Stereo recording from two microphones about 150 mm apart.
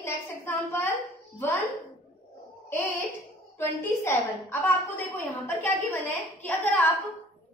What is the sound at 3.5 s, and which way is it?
A woman's voice, 15° left (ahead or behind).